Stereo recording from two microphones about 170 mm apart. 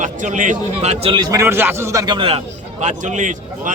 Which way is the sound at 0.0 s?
50° right (ahead or behind).